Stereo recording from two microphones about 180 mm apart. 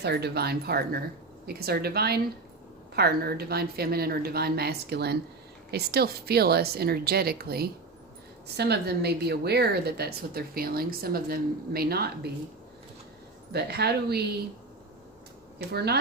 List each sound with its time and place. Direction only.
0.0 s a woman's voice: 65° right (ahead or behind)
13.5 s a woman's voice: 65° right (ahead or behind)
15.5 s speech: 65° right (ahead or behind)